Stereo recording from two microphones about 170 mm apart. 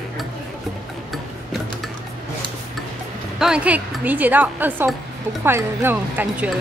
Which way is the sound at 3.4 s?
5° right (ahead or behind).